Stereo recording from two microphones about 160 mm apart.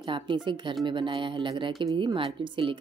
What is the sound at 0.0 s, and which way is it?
Speech, 30° right (ahead or behind).